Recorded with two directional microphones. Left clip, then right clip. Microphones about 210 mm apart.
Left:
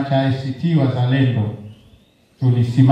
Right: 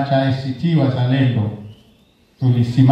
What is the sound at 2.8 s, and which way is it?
Speech, 20° right (ahead or behind).